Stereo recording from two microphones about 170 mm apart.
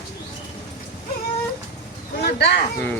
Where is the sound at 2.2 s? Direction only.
70° left (ahead or behind).